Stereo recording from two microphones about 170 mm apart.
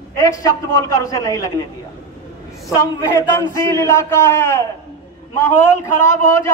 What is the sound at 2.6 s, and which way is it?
A man's voice, 15° left (ahead or behind).